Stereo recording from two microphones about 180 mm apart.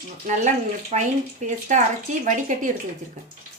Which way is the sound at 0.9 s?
40° right (ahead or behind).